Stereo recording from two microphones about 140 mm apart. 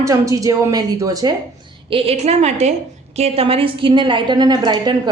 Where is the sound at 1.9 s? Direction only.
45° right (ahead or behind).